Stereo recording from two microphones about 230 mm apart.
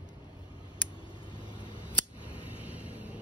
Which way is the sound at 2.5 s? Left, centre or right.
Centre.